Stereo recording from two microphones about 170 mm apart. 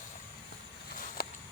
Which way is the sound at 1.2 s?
60° left (ahead or behind).